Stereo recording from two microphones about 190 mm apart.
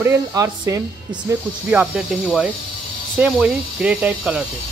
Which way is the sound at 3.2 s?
5° right (ahead or behind).